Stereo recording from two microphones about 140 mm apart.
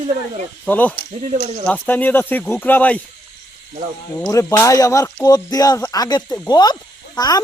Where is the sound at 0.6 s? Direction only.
10° left (ahead or behind).